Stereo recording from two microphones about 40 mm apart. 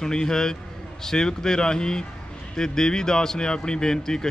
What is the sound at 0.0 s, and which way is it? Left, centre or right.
A man's voice, centre.